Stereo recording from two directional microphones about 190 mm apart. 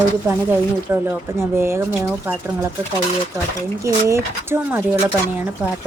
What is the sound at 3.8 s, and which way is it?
A woman's voice, 15° right (ahead or behind).